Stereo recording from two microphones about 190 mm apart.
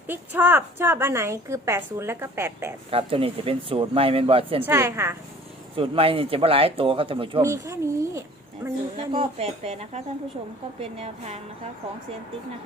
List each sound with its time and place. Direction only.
0.1 s a woman's voice: 10° right (ahead or behind)
2.9 s speech: 30° right (ahead or behind)
4.6 s a woman's voice: 10° right (ahead or behind)
5.7 s speech: 25° right (ahead or behind)
7.4 s a woman's voice: 15° right (ahead or behind)
9.0 s speech: 30° right (ahead or behind)